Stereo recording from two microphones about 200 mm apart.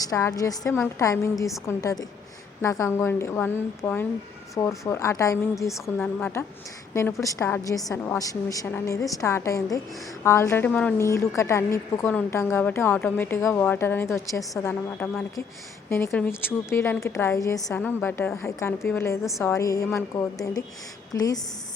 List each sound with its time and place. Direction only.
0.1 s a woman's voice: 15° left (ahead or behind)